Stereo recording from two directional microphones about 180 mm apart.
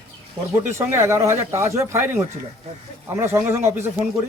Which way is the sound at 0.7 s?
15° right (ahead or behind).